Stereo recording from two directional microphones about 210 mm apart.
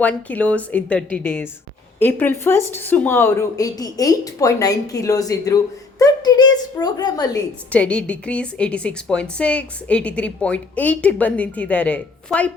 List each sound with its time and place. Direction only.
0.0 s a woman's voice: 5° left (ahead or behind)
7.7 s a woman's voice: 5° left (ahead or behind)